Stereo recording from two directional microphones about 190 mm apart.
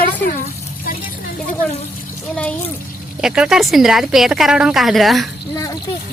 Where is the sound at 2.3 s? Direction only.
5° left (ahead or behind).